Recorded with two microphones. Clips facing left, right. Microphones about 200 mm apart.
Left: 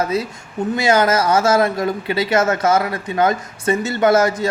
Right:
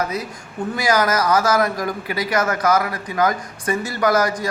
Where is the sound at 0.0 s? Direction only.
25° left (ahead or behind).